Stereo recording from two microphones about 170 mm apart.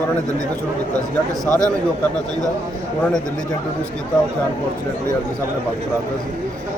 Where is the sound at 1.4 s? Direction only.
20° right (ahead or behind).